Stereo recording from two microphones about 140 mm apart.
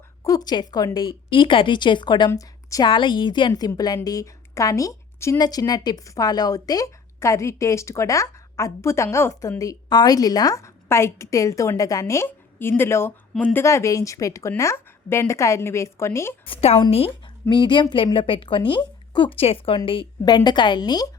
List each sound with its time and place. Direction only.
0.3 s a woman's voice: 30° left (ahead or behind)
2.3 s a woman's voice: 25° left (ahead or behind)
2.9 s a woman's voice: 35° left (ahead or behind)
16.5 s a woman's voice: 45° left (ahead or behind)
17.5 s speech: 35° left (ahead or behind)